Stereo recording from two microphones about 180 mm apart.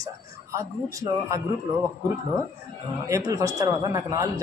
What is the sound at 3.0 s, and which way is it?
Speech, 20° right (ahead or behind).